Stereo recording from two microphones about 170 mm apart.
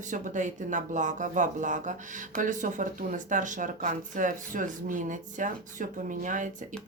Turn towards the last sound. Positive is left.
turn(degrees=-50)  # may be behind; listen again after turning